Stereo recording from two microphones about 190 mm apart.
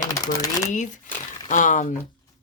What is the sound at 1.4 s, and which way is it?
Speech, 40° left (ahead or behind).